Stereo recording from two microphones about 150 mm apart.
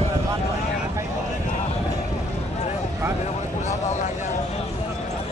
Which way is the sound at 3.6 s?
50° left (ahead or behind).